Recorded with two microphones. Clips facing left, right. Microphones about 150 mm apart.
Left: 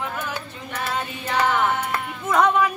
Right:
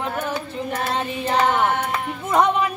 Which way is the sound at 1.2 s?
25° right (ahead or behind).